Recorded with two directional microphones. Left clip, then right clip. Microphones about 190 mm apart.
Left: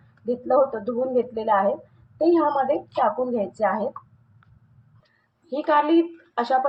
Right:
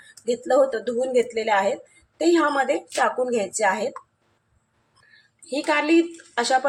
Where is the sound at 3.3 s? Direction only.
20° right (ahead or behind).